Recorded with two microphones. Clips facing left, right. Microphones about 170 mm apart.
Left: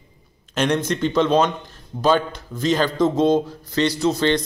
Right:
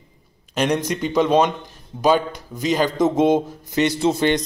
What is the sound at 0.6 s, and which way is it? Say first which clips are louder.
A man's voice: even; 10° right (ahead or behind).